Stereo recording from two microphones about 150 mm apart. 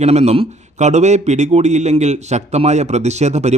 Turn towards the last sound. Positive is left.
turn(degrees=-50)  # may be behind; listen again after turning